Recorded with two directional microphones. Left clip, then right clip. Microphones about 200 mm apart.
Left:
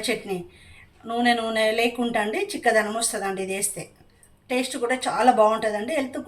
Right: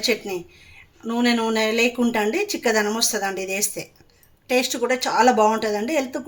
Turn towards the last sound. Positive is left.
turn(degrees=-50)  # may be behind; listen again after turning